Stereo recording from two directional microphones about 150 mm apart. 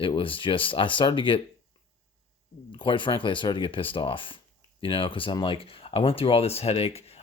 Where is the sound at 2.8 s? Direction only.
35° left (ahead or behind).